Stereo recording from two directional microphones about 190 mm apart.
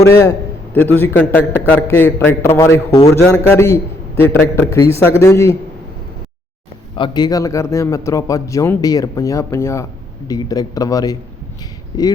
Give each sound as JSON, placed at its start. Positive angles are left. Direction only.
{"t": 0.0, "sound": "a man's voice", "side_deg": 15}
{"t": 6.9, "sound": "a man's voice", "side_deg": 25}